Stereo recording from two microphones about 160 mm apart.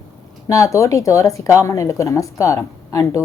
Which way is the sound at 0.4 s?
20° left (ahead or behind).